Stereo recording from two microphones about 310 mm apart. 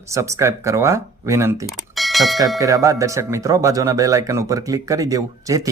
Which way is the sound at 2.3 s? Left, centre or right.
Centre.